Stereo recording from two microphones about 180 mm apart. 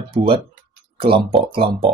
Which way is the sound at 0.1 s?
30° right (ahead or behind).